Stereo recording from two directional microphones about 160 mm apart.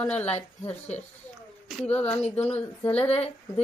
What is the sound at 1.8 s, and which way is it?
Speech, 10° left (ahead or behind).